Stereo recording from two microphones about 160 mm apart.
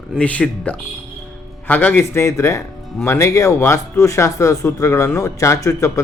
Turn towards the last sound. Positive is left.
turn(degrees=20)  # may be behind; listen again after turning